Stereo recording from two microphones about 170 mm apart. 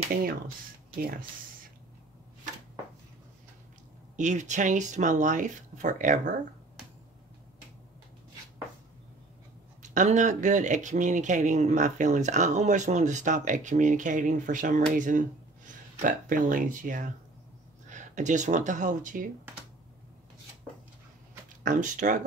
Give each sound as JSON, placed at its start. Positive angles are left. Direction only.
{"t": 0.1, "sound": "speech", "side_deg": -60}
{"t": 4.2, "sound": "speech", "side_deg": -45}
{"t": 9.8, "sound": "speech", "side_deg": -45}
{"t": 21.6, "sound": "speech", "side_deg": -45}